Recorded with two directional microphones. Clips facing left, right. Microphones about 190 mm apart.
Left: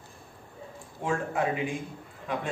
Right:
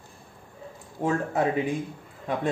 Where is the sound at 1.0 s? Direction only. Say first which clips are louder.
Right 4 dB; 40° right (ahead or behind).